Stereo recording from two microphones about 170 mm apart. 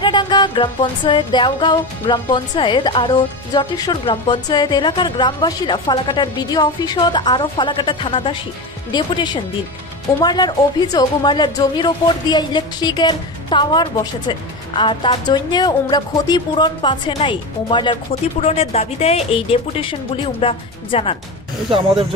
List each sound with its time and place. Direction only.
0.0 s music: 25° left (ahead or behind)
18.4 s speech: 35° left (ahead or behind)